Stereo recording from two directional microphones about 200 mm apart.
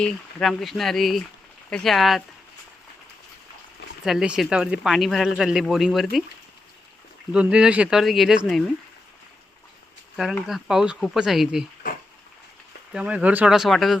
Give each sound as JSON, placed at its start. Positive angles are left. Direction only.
{"t": 0.0, "sound": "speech", "side_deg": 5}
{"t": 4.0, "sound": "speech", "side_deg": 0}
{"t": 7.3, "sound": "speech", "side_deg": -5}
{"t": 10.2, "sound": "speech", "side_deg": 0}
{"t": 12.9, "sound": "speech", "side_deg": -5}